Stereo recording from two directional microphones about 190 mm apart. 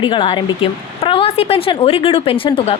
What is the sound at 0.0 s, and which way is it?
Speech, 25° left (ahead or behind).